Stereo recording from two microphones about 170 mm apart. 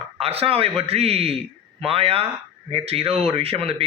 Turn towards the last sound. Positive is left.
turn(degrees=-35)  # may be behind; listen again after turning